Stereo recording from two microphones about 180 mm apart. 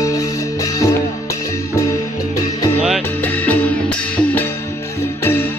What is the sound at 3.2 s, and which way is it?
Music, 10° left (ahead or behind).